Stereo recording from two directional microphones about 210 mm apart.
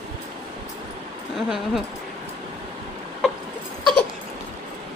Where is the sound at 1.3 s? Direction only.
Centre (ahead or behind).